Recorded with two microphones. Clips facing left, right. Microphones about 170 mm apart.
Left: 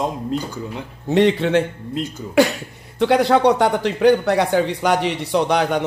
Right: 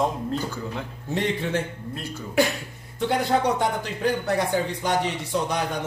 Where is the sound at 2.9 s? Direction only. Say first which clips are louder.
Left 7 dB; 80° left.